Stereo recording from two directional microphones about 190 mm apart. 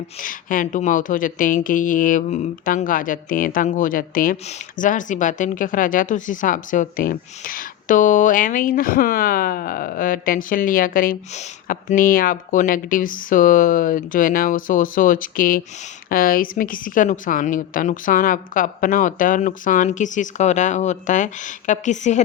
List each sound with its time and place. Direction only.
0.2 s a woman's voice: 45° left (ahead or behind)